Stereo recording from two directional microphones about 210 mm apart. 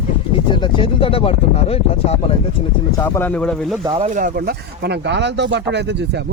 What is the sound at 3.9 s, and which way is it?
Speech, 35° right (ahead or behind).